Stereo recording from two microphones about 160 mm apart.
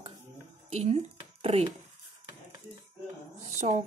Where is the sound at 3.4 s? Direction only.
45° right (ahead or behind).